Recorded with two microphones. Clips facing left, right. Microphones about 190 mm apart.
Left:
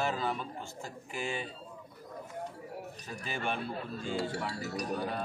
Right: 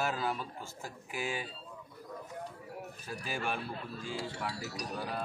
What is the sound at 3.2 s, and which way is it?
Speech, centre (ahead or behind).